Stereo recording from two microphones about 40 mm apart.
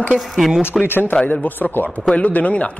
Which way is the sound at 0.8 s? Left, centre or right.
Left.